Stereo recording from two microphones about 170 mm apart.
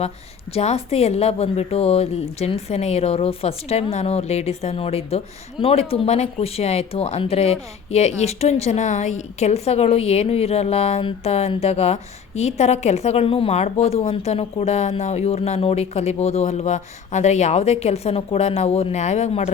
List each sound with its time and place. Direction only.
0.5 s a woman's voice: 35° left (ahead or behind)